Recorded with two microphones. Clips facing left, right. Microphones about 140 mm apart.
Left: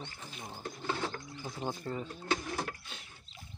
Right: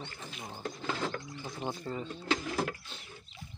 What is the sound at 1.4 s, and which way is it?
Speech, centre (ahead or behind).